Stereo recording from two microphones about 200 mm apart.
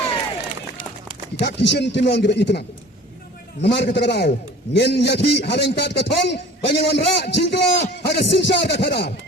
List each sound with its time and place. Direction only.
1.4 s a man's voice: 60° left (ahead or behind)